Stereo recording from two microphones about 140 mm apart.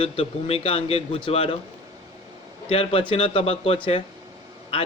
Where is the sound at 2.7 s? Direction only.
40° left (ahead or behind).